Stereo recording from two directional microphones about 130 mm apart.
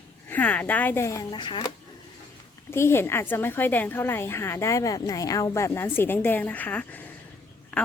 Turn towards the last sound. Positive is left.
turn(degrees=10)  # may be behind; listen again after turning